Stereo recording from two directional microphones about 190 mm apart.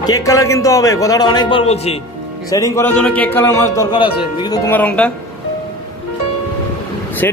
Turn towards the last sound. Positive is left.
turn(degrees=10)  # may be behind; listen again after turning